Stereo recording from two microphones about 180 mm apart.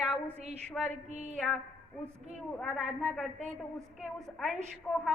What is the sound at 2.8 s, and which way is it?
A woman's voice, 5° left (ahead or behind).